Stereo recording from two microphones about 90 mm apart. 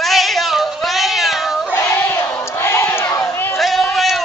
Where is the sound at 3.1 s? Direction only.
25° left (ahead or behind).